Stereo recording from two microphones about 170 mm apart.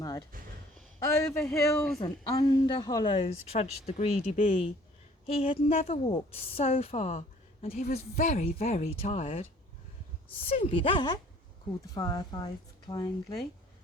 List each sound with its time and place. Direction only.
0.0 s a sound: 20° left (ahead or behind)
0.9 s speech: 15° left (ahead or behind)
1.4 s speech: 5° left (ahead or behind)
2.0 s a woman's voice: 25° left (ahead or behind)
10.5 s speech: 30° left (ahead or behind)